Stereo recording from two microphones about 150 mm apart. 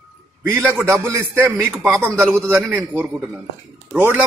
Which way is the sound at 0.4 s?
15° right (ahead or behind).